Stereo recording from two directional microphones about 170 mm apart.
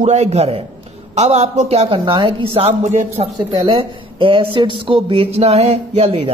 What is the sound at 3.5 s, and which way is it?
Speech, 30° right (ahead or behind).